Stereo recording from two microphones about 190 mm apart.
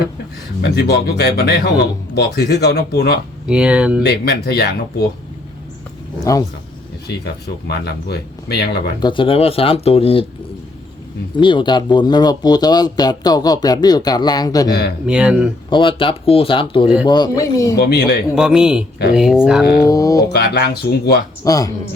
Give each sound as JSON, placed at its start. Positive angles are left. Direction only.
{"t": 0.6, "sound": "speech", "side_deg": 60}
{"t": 3.4, "sound": "speech", "side_deg": -5}
{"t": 4.0, "sound": "speech", "side_deg": 60}
{"t": 7.1, "sound": "speech", "side_deg": 60}
{"t": 9.0, "sound": "speech", "side_deg": 25}
{"t": 11.3, "sound": "speech", "side_deg": 25}
{"t": 15.0, "sound": "speech", "side_deg": -5}
{"t": 15.7, "sound": "speech", "side_deg": 25}
{"t": 17.7, "sound": "speech", "side_deg": 60}
{"t": 18.3, "sound": "speech", "side_deg": -5}
{"t": 19.9, "sound": "speech", "side_deg": 20}
{"t": 20.3, "sound": "speech", "side_deg": 55}
{"t": 21.4, "sound": "speech", "side_deg": 20}